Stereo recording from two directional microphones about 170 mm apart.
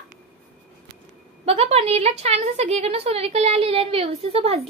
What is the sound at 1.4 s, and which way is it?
A woman's voice, 35° right (ahead or behind).